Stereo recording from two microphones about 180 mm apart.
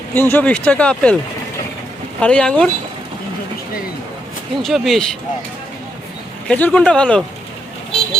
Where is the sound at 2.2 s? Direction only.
5° left (ahead or behind).